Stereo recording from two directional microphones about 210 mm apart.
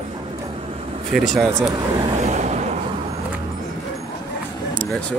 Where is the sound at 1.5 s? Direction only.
20° right (ahead or behind).